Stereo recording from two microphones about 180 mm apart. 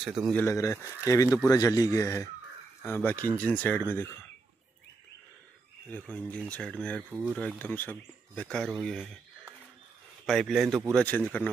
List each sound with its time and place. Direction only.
0.3 s a man's voice: 15° left (ahead or behind)
5.9 s speech: 10° left (ahead or behind)